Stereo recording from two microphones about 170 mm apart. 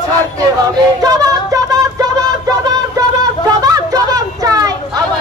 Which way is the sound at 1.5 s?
20° right (ahead or behind).